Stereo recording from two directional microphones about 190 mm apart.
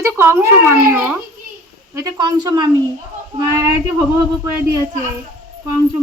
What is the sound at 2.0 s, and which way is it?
Speech, 20° right (ahead or behind).